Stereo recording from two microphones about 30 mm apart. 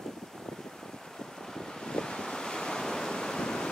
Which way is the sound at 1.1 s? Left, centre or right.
Centre.